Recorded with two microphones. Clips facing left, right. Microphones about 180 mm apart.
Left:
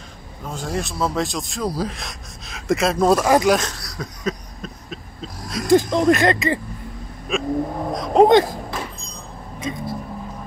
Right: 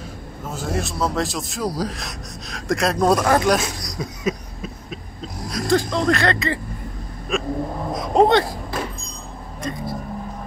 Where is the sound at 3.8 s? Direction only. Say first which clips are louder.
Right 2 dB; 15° right (ahead or behind).